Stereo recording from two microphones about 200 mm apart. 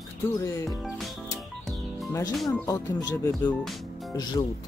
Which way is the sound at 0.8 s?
Centre (ahead or behind).